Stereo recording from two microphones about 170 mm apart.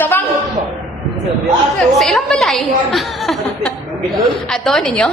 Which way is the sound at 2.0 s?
Centre (ahead or behind).